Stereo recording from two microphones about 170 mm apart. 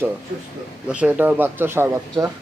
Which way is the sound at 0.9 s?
5° right (ahead or behind).